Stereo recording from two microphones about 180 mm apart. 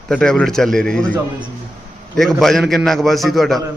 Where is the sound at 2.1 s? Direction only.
Centre (ahead or behind).